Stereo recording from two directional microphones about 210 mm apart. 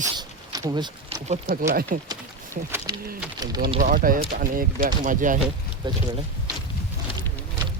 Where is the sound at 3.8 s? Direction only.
40° right (ahead or behind).